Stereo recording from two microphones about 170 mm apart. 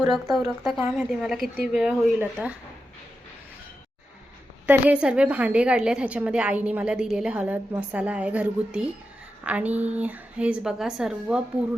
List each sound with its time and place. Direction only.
0.3 s a woman's voice: centre (ahead or behind)
4.6 s a woman's voice: 5° right (ahead or behind)